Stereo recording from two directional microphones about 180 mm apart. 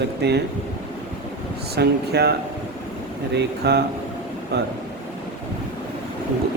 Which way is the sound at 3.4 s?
65° right (ahead or behind).